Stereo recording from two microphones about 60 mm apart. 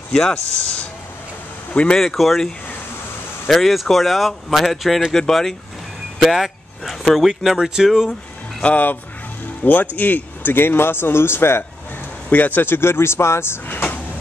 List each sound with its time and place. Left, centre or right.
0.1 s speech: centre
1.7 s speech: centre
2.0 s speech: centre
6.1 s vehicle: centre
7.2 s speech: centre
9.6 s speech: left
12.3 s speech: left